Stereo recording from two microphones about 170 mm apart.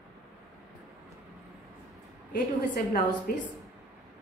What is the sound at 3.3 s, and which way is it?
Speech, 60° left (ahead or behind).